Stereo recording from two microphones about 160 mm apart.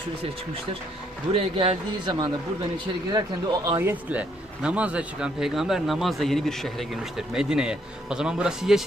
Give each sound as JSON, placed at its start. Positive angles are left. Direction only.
{"t": 1.3, "sound": "a man's voice", "side_deg": -35}